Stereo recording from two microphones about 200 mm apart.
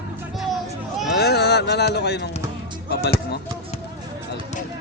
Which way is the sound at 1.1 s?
55° left (ahead or behind).